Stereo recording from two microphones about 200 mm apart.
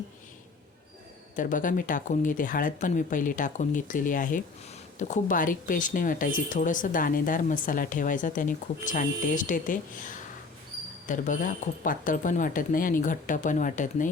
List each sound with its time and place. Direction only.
1.4 s speech: 40° left (ahead or behind)